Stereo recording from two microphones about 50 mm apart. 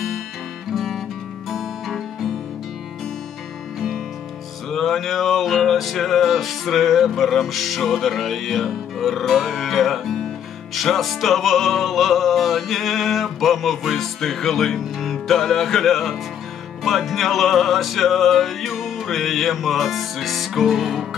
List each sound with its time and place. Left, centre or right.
0.7 s music: centre
4.6 s music: centre